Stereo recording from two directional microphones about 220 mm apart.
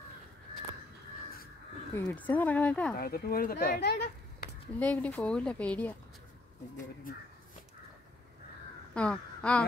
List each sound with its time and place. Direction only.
2.0 s speech: 5° left (ahead or behind)
3.0 s speech: 45° left (ahead or behind)
4.7 s speech: 5° left (ahead or behind)
8.9 s speech: 5° left (ahead or behind)